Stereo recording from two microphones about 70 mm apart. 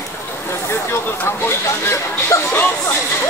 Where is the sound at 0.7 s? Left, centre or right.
Left.